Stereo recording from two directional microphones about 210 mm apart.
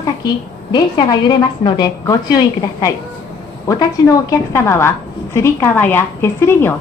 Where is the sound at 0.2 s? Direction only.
20° left (ahead or behind).